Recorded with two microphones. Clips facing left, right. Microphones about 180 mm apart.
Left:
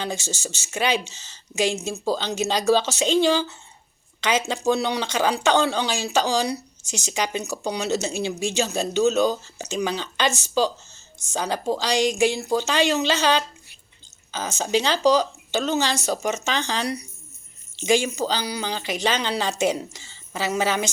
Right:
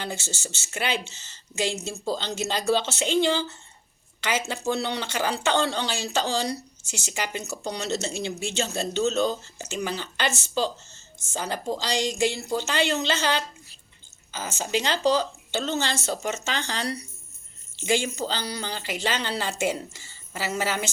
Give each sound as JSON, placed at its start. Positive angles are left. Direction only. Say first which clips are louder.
{"t": 0.0, "sound": "speech", "louder": "left 4 dB", "side_deg": 15}
{"t": 4.2, "sound": "speech", "louder": "left 5 dB", "side_deg": 20}
{"t": 10.9, "sound": "a sound", "louder": "left 4 dB", "side_deg": 15}
{"t": 11.9, "sound": "speech", "louder": "left 5 dB", "side_deg": 10}